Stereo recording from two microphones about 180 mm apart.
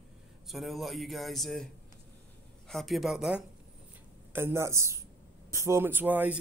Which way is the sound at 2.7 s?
Centre (ahead or behind).